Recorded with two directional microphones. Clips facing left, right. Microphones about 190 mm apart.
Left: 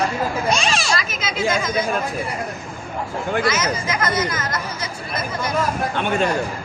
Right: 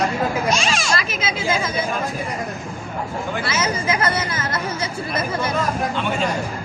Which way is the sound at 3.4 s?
30° right (ahead or behind).